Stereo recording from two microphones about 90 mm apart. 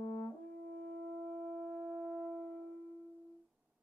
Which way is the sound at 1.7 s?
10° left (ahead or behind).